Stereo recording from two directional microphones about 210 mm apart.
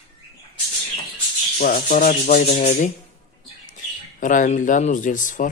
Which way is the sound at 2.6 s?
35° left (ahead or behind).